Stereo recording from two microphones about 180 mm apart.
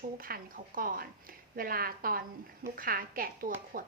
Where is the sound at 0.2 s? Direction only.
55° right (ahead or behind).